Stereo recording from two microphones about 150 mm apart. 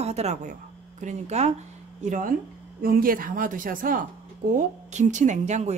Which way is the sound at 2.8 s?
70° right (ahead or behind).